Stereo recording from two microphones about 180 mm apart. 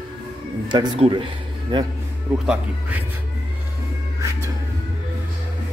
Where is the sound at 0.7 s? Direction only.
25° right (ahead or behind).